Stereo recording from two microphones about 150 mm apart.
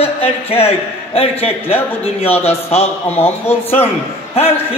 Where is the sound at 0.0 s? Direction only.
40° left (ahead or behind).